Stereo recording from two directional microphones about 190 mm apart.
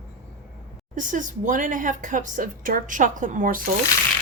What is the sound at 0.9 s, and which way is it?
Speech, 40° right (ahead or behind).